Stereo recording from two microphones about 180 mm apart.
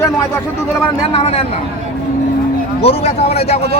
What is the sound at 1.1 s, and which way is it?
Speech, 35° left (ahead or behind).